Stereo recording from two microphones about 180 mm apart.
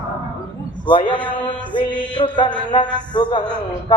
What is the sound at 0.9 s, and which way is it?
Music, 25° left (ahead or behind).